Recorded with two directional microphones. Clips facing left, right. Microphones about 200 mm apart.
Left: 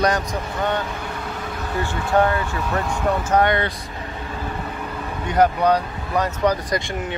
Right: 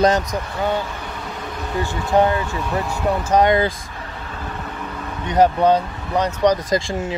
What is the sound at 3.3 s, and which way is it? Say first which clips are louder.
Speech: right 4 dB; 25° right (ahead or behind).